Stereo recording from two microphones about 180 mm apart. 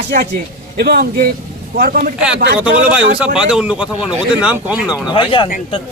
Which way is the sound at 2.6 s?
5° right (ahead or behind).